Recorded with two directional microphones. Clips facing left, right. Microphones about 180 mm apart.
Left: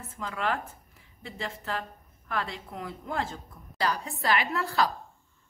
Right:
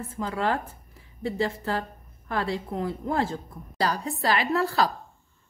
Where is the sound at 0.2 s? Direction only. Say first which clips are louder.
Right 4 dB; 35° right (ahead or behind).